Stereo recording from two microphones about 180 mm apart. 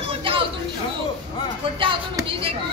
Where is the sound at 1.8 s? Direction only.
30° right (ahead or behind).